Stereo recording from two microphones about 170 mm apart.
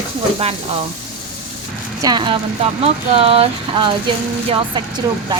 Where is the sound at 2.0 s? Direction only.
25° right (ahead or behind).